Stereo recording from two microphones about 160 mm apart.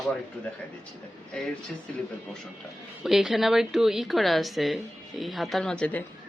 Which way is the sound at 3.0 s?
Centre (ahead or behind).